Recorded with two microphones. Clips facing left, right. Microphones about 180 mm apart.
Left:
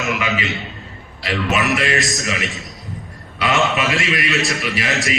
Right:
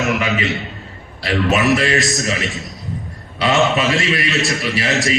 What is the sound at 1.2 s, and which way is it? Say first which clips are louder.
Mantra: right 4 dB; 30° right (ahead or behind).